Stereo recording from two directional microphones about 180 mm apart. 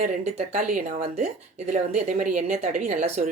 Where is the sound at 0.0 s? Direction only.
45° right (ahead or behind).